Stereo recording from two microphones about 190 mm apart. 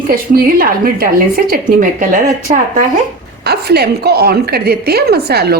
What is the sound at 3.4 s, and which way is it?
A woman's voice, 60° right (ahead or behind).